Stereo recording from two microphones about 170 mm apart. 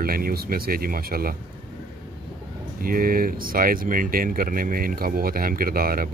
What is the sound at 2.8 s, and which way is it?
Speech, 55° right (ahead or behind).